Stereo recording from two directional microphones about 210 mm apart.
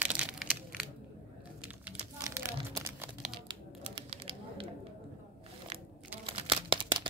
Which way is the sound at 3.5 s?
25° right (ahead or behind).